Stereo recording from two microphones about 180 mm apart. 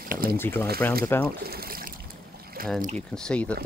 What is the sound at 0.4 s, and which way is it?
Speech, 10° left (ahead or behind).